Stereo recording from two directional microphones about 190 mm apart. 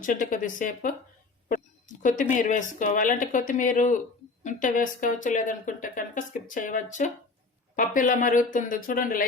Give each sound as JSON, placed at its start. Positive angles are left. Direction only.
{"t": 0.0, "sound": "speech", "side_deg": 45}
{"t": 1.5, "sound": "a sound", "side_deg": 45}
{"t": 2.3, "sound": "speech", "side_deg": 40}